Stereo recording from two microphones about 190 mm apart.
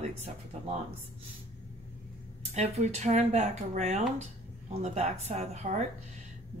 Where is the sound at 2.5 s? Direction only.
35° right (ahead or behind).